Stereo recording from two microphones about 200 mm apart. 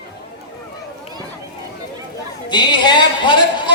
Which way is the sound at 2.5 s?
20° left (ahead or behind).